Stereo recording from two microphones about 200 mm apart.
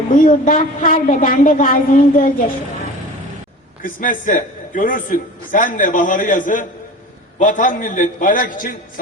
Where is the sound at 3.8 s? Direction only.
45° left (ahead or behind).